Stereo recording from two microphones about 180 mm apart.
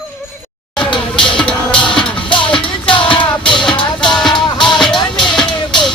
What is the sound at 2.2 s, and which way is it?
Music, 25° left (ahead or behind).